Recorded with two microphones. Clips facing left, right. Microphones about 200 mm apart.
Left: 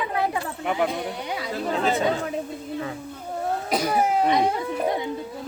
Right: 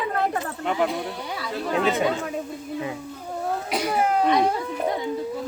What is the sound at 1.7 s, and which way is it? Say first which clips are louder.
Speech: right 2 dB; 35° left (ahead or behind).